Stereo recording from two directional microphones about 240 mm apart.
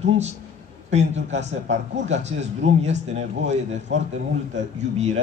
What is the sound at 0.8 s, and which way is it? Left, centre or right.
A man's voice, right.